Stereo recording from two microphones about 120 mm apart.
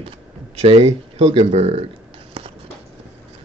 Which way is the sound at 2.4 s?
50° right (ahead or behind).